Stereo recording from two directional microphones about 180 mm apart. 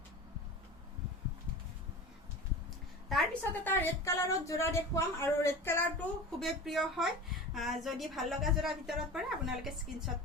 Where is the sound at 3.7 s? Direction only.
15° left (ahead or behind).